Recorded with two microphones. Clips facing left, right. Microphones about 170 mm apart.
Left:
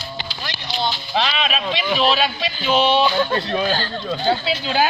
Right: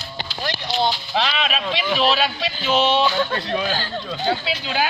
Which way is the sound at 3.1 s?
30° left (ahead or behind).